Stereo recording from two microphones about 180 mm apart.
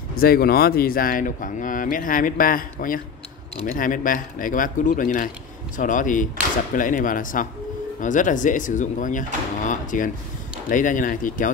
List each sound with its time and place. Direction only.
0.1 s speech: 55° left (ahead or behind)